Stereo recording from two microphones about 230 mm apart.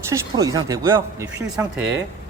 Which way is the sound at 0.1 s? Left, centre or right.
Centre.